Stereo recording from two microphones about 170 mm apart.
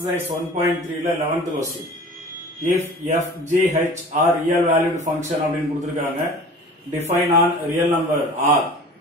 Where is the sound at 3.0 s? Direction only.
45° right (ahead or behind).